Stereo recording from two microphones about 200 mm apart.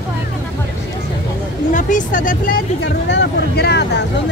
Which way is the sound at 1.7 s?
40° left (ahead or behind).